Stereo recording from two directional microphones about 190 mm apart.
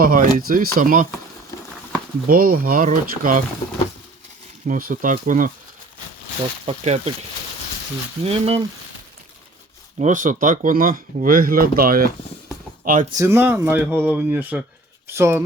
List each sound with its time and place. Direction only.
0.0 s speech: 50° right (ahead or behind)
2.2 s speech: 50° right (ahead or behind)
4.6 s speech: 45° right (ahead or behind)
6.7 s speech: 35° right (ahead or behind)
10.0 s speech: 40° right (ahead or behind)
13.1 s speech: 15° right (ahead or behind)